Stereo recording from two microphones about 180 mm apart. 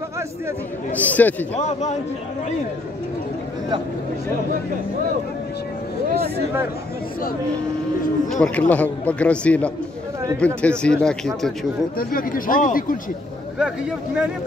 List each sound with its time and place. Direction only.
0.9 s a man's voice: 10° left (ahead or behind)
1.5 s a man's voice: 40° left (ahead or behind)
8.3 s a man's voice: 5° left (ahead or behind)
12.0 s speech: 55° left (ahead or behind)
13.6 s speech: 5° right (ahead or behind)